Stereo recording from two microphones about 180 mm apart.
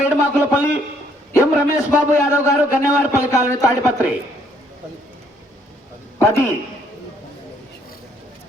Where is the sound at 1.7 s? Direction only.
15° left (ahead or behind).